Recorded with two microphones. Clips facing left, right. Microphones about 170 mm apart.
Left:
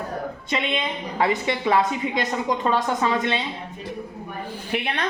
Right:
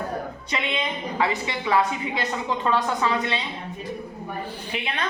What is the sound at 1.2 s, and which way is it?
A woman's voice, 50° left (ahead or behind).